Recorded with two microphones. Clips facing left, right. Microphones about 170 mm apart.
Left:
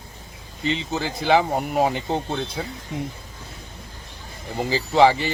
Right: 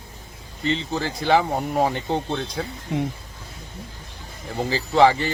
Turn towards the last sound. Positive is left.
turn(degrees=10)  # may be behind; listen again after turning